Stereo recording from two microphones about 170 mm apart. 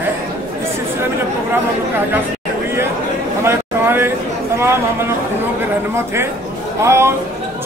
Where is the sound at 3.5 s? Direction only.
15° right (ahead or behind).